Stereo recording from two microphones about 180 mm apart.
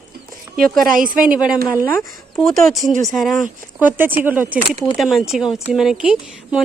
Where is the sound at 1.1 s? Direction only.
5° right (ahead or behind).